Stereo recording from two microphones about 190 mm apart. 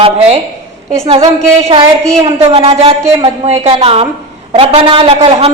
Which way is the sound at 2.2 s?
30° right (ahead or behind).